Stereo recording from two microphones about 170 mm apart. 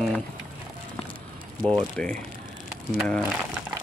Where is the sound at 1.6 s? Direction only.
Centre (ahead or behind).